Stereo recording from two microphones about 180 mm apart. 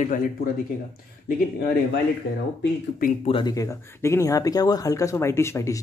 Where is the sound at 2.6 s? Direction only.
50° left (ahead or behind).